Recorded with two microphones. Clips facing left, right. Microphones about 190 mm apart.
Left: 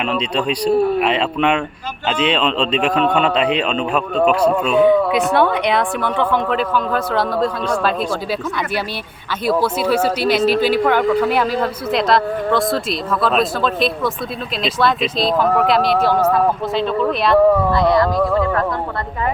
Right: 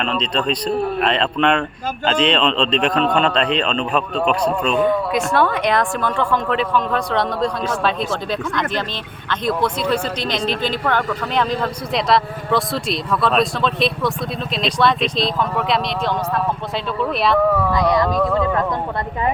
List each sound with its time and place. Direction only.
0.0 s a man's voice: 10° left (ahead or behind)
4.8 s speech: 65° left (ahead or behind)
5.4 s speech: centre (ahead or behind)
17.7 s speech: 15° right (ahead or behind)